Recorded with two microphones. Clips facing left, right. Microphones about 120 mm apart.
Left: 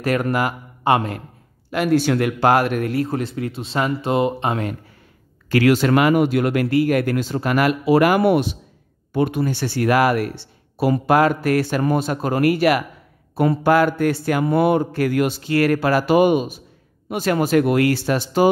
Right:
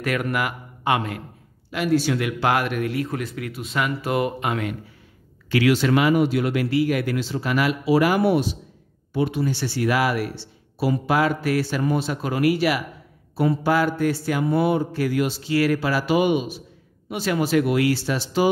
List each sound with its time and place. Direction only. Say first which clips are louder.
0.0 s speech: left 4 dB; 35° left (ahead or behind)
1.7 s speech: left 3 dB; 50° left (ahead or behind); by 4.7 s 35° left (ahead or behind)
5.5 s speech: left 3 dB; 45° left (ahead or behind)